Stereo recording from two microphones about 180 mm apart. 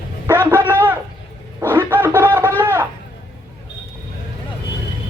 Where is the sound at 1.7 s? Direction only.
10° right (ahead or behind).